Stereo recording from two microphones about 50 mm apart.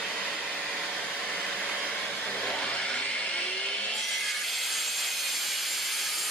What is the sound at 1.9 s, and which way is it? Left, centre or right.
Hair dryer, left.